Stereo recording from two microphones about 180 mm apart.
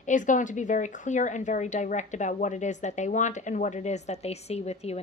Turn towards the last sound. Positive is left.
turn(degrees=35)  # may be behind; listen again after turning